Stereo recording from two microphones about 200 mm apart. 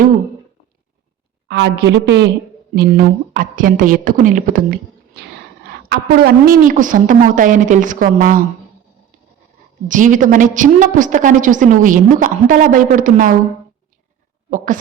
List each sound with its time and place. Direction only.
1.5 s a woman's voice: 60° right (ahead or behind); by 8.4 s 45° right (ahead or behind)
9.9 s a woman's voice: 40° right (ahead or behind)
14.5 s a woman's voice: 40° right (ahead or behind)